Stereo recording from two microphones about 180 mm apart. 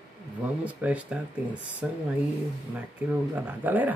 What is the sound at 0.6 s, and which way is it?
Speech, 10° right (ahead or behind).